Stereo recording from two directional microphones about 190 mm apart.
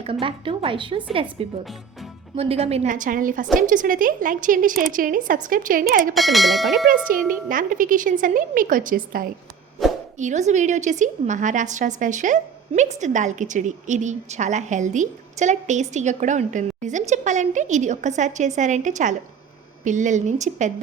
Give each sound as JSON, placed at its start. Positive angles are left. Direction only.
{"t": 0.0, "sound": "a woman's voice", "side_deg": -30}
{"t": 6.1, "sound": "a sound", "side_deg": 0}
{"t": 6.8, "sound": "a woman's voice", "side_deg": -45}
{"t": 9.8, "sound": "plop", "side_deg": 0}
{"t": 10.2, "sound": "a woman's voice", "side_deg": -40}